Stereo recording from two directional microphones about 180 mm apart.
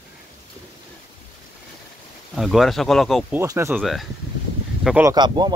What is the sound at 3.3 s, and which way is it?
Speech, 15° right (ahead or behind).